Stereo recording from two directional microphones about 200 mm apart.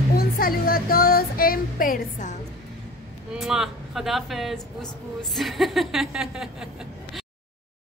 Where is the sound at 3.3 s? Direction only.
Centre (ahead or behind).